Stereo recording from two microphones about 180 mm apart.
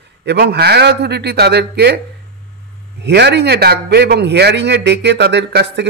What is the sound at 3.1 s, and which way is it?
A man's voice, 70° right (ahead or behind).